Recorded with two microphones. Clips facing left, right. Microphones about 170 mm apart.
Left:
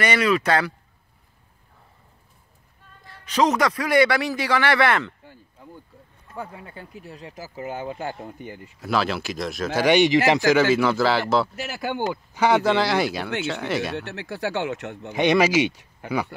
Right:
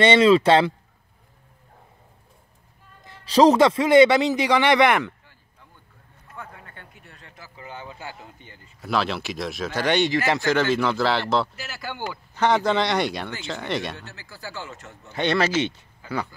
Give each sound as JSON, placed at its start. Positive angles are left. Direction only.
{"t": 0.0, "sound": "a man's voice", "side_deg": -25}
{"t": 3.3, "sound": "a man's voice", "side_deg": -35}
{"t": 6.6, "sound": "speech", "side_deg": 5}
{"t": 7.2, "sound": "speech", "side_deg": 35}
{"t": 8.8, "sound": "speech", "side_deg": 0}
{"t": 11.5, "sound": "speech", "side_deg": 55}
{"t": 12.4, "sound": "speech", "side_deg": 5}
{"t": 13.9, "sound": "speech", "side_deg": 70}
{"t": 15.1, "sound": "speech", "side_deg": 15}